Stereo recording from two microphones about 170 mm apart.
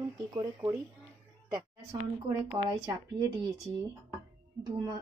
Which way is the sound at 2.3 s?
20° right (ahead or behind).